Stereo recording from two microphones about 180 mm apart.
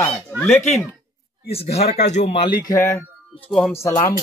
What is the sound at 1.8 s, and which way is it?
A man's voice, 35° left (ahead or behind).